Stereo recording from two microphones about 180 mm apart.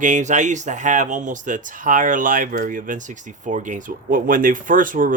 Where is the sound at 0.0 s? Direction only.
45° right (ahead or behind).